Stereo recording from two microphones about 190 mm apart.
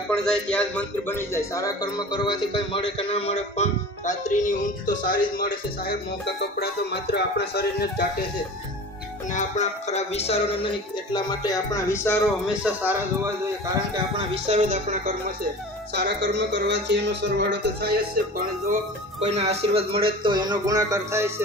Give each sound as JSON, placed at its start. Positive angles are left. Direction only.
{"t": 0.1, "sound": "a man's voice", "side_deg": 5}
{"t": 9.3, "sound": "a man's voice", "side_deg": 40}
{"t": 12.3, "sound": "a man's voice", "side_deg": -5}
{"t": 13.9, "sound": "speech", "side_deg": -30}
{"t": 15.9, "sound": "speech", "side_deg": -65}
{"t": 19.1, "sound": "speech", "side_deg": -35}